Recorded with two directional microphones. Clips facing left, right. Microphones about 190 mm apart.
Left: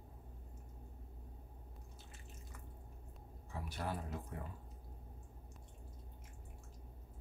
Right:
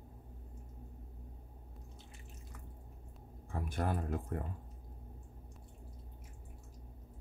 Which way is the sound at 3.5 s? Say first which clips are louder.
Right 6 dB; 50° right (ahead or behind).